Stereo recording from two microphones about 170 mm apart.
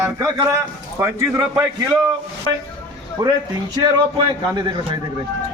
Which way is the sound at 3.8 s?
25° right (ahead or behind).